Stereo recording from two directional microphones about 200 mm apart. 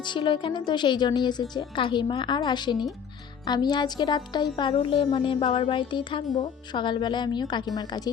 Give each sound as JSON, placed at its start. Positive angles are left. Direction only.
{"t": 0.0, "sound": "a woman's voice", "side_deg": 25}